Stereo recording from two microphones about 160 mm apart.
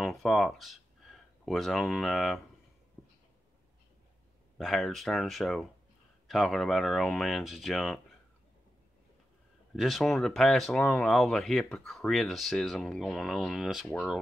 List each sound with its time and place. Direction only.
0.0 s speech: centre (ahead or behind)
4.6 s speech: centre (ahead or behind)
9.8 s speech: centre (ahead or behind)